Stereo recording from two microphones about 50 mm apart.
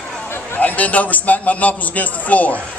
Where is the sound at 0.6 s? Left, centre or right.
Left.